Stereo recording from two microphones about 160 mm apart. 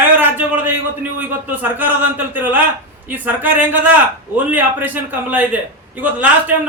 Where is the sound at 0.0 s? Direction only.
10° right (ahead or behind).